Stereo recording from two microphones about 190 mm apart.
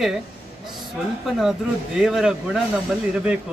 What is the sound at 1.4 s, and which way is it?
A man's voice, 5° right (ahead or behind).